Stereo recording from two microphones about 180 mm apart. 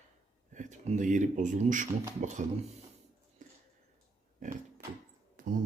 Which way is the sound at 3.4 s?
45° right (ahead or behind).